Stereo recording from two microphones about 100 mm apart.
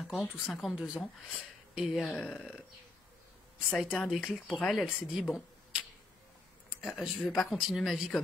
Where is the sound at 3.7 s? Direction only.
Centre (ahead or behind).